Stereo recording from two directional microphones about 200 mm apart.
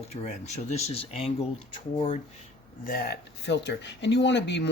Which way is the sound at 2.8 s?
50° left (ahead or behind).